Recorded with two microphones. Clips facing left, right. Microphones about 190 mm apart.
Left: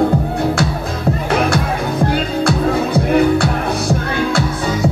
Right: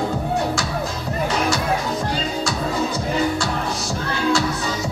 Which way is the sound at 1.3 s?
55° left (ahead or behind).